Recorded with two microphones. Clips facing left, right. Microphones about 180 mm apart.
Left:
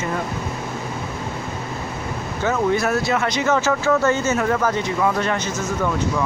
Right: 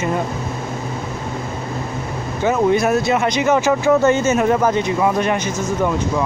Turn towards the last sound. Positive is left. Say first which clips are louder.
# right 3 dB
turn(degrees=-15)  # may be behind; listen again after turning